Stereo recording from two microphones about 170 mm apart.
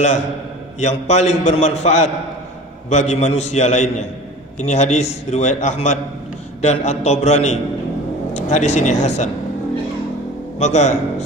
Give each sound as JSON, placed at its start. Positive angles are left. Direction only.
{"t": 0.7, "sound": "a man's voice", "side_deg": 45}
{"t": 10.6, "sound": "a man's voice", "side_deg": 45}